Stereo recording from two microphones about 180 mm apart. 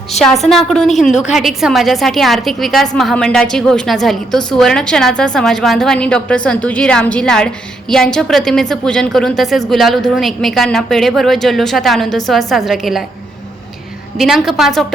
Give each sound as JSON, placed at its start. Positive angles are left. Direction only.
{"t": 0.2, "sound": "a woman's voice", "side_deg": 0}
{"t": 14.2, "sound": "a woman's voice", "side_deg": 0}